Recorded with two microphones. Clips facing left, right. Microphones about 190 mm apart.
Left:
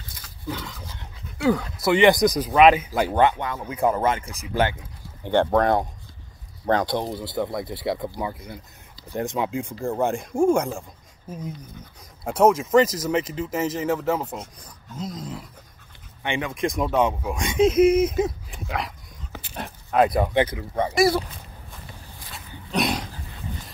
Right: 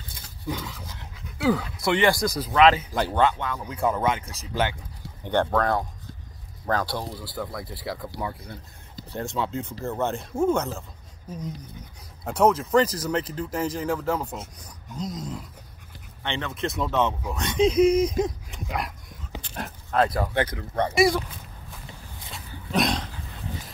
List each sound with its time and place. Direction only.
1.4 s speech: centre (ahead or behind)
2.0 s speech: 20° left (ahead or behind)
5.2 s speech: 15° left (ahead or behind)
8.2 s speech: 10° left (ahead or behind)
15.0 s a sound: centre (ahead or behind)
16.2 s speech: 10° left (ahead or behind)
22.3 s wild animals: centre (ahead or behind)